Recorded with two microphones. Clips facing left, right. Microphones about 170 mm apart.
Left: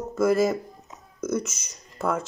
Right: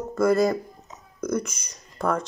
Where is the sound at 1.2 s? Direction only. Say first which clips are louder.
Right 1 dB; 25° left (ahead or behind).